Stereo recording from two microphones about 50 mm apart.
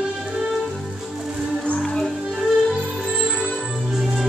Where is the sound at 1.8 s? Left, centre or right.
Centre.